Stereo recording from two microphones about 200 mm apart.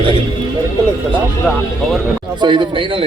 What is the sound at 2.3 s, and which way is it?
Speech, 20° right (ahead or behind).